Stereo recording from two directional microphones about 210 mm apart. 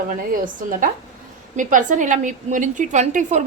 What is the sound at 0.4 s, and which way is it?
A woman's voice, 40° right (ahead or behind).